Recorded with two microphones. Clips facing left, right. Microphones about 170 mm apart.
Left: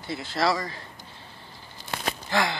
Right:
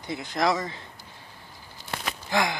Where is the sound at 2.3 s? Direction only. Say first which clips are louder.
Right 1 dB; 15° right (ahead or behind).